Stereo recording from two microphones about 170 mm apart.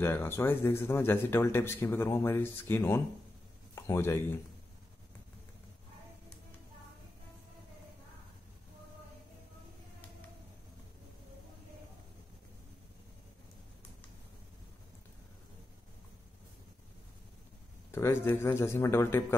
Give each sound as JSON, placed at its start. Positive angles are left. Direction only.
{"t": 0.0, "sound": "speech", "side_deg": 15}
{"t": 17.9, "sound": "speech", "side_deg": 15}